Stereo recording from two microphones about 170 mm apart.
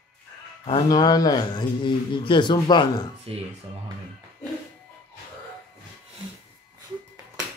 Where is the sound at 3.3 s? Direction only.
35° right (ahead or behind).